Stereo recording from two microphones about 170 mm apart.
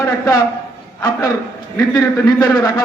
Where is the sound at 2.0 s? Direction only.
20° left (ahead or behind).